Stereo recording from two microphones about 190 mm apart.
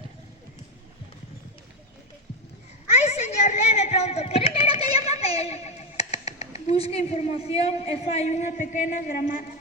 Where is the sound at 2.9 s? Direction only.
35° left (ahead or behind).